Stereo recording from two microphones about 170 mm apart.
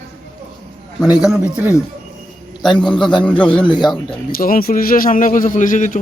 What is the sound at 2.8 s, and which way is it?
Speech, centre (ahead or behind).